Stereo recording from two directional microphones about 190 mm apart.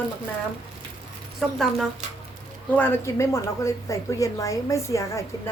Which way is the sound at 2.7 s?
10° left (ahead or behind).